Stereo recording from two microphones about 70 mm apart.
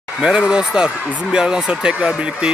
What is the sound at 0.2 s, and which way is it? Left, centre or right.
Speech, centre.